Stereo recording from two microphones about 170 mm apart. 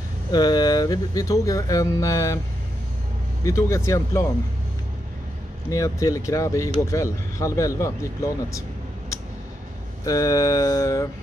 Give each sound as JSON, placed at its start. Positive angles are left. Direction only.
{"t": 0.3, "sound": "speech", "side_deg": 25}
{"t": 3.4, "sound": "speech", "side_deg": 15}
{"t": 5.7, "sound": "speech", "side_deg": 20}
{"t": 10.0, "sound": "speech", "side_deg": 20}